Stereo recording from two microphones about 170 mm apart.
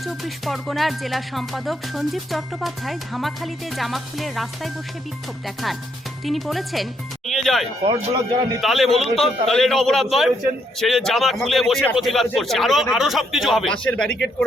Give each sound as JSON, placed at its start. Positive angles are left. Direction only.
{"t": 0.0, "sound": "speech", "side_deg": 0}
{"t": 6.2, "sound": "speech", "side_deg": 0}
{"t": 7.9, "sound": "a man's voice", "side_deg": -25}
{"t": 8.6, "sound": "speech", "side_deg": 0}